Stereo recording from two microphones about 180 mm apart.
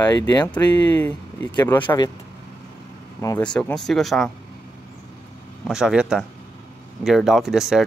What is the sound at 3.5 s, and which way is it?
Speech, 5° left (ahead or behind).